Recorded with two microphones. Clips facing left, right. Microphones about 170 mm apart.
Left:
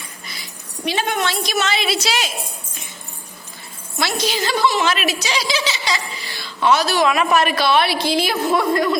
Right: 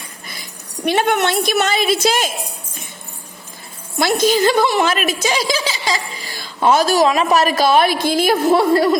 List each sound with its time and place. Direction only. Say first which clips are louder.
0.9 s a woman's voice: right 5 dB; 60° right (ahead or behind)
3.9 s a woman's voice: right 7 dB; 50° right (ahead or behind)
8.5 s a woman's voice: right 2 dB; 35° right (ahead or behind)